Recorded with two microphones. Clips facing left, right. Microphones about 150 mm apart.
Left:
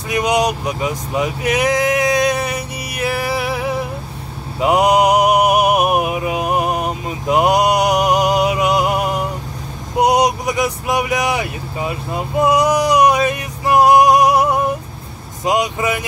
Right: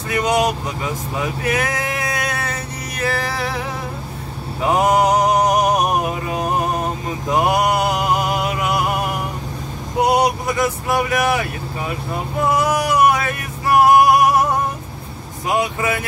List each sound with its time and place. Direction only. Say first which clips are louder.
0.1 s a sound: left 1 dB; 15° left (ahead or behind)
9.9 s vehicle: left 2 dB; 20° left (ahead or behind)
12.4 s music: left 3 dB; 20° left (ahead or behind)
15.4 s speech: left 2 dB; 20° left (ahead or behind)